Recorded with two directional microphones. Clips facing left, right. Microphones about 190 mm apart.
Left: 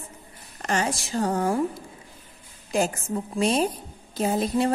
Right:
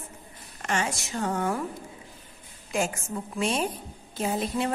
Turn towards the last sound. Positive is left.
turn(degrees=40)  # may be behind; listen again after turning